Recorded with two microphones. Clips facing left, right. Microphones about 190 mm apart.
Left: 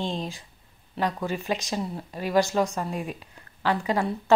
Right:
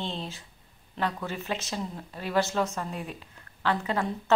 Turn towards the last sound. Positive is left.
turn(degrees=15)  # may be behind; listen again after turning